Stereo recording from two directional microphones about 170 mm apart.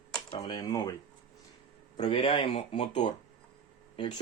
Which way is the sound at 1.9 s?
30° left (ahead or behind).